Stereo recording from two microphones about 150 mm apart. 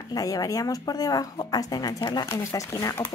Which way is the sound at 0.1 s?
25° left (ahead or behind).